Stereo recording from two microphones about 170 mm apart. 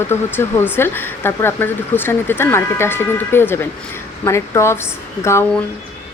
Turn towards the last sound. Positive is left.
turn(degrees=15)  # may be behind; listen again after turning